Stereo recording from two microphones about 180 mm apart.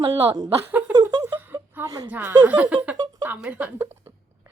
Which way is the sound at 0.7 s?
10° right (ahead or behind).